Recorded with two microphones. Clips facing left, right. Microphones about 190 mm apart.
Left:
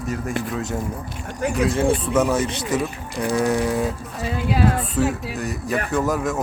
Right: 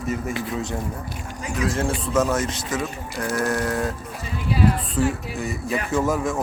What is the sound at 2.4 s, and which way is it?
Speech, 60° left (ahead or behind).